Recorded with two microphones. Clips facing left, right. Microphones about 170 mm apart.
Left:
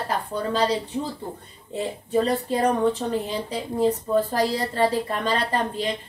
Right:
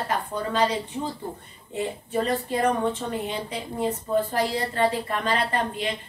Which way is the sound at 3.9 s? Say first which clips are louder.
Left 1 dB; 35° left (ahead or behind).